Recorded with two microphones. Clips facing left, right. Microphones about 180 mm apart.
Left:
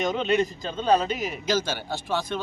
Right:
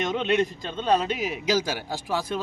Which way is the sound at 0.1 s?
Centre (ahead or behind).